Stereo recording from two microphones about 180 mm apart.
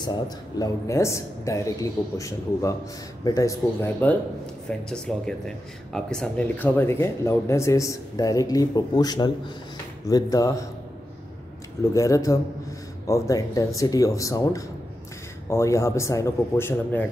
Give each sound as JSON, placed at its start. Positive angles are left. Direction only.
{"t": 0.0, "sound": "speech", "side_deg": 20}
{"t": 11.8, "sound": "speech", "side_deg": 15}